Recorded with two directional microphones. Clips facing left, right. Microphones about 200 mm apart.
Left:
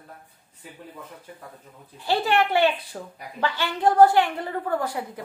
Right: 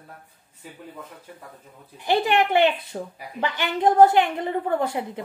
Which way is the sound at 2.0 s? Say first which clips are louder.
Right 2 dB; 15° right (ahead or behind).